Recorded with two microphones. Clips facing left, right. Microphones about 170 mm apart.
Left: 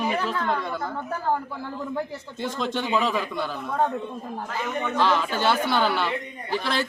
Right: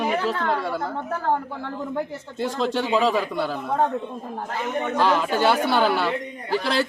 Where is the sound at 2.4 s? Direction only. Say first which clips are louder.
Right 4 dB; 35° right (ahead or behind).